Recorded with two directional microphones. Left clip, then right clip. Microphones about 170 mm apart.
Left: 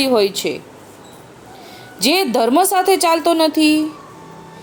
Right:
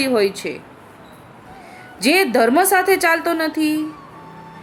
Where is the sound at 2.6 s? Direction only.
20° left (ahead or behind).